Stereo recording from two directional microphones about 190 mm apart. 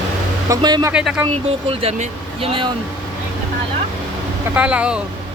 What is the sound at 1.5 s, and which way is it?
Speech, 30° right (ahead or behind).